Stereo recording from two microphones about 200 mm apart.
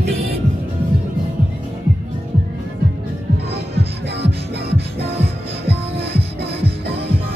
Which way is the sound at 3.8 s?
30° right (ahead or behind).